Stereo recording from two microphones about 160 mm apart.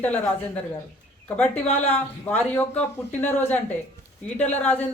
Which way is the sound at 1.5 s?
40° left (ahead or behind).